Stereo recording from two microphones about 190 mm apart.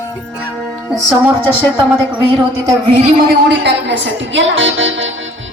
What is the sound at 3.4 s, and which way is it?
A woman's voice, 65° right (ahead or behind).